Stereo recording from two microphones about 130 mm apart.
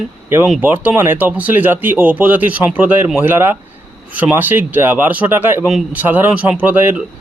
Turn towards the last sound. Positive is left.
turn(degrees=-15)  # may be behind; listen again after turning